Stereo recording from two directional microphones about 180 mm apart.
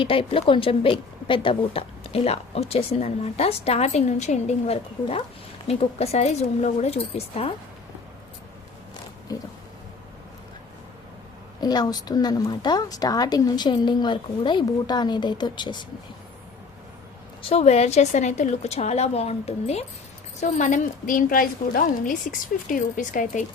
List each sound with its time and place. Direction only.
0.0 s a woman's voice: 30° left (ahead or behind)
11.6 s a woman's voice: 20° left (ahead or behind)
17.5 s a woman's voice: 35° left (ahead or behind)